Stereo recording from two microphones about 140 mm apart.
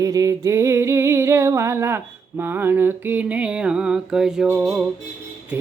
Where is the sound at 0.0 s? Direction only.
25° right (ahead or behind).